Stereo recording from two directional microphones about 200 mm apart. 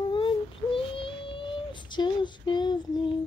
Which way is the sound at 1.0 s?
25° left (ahead or behind).